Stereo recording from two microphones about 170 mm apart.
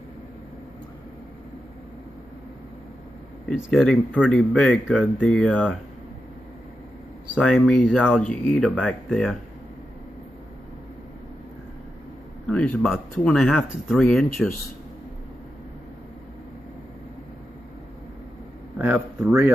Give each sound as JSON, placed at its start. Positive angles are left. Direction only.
{"t": 3.4, "sound": "speech", "side_deg": 5}
{"t": 7.3, "sound": "speech", "side_deg": 5}
{"t": 12.4, "sound": "speech", "side_deg": 5}
{"t": 19.1, "sound": "speech", "side_deg": -10}